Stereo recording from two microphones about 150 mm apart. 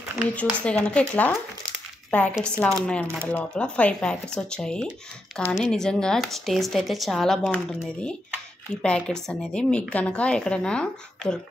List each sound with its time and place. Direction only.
0.4 s a woman's voice: 10° left (ahead or behind)